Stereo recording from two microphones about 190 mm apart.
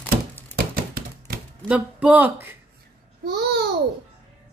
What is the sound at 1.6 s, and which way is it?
Speech, 5° right (ahead or behind).